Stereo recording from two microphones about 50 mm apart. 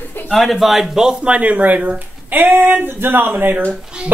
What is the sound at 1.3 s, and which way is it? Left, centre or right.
Speech, right.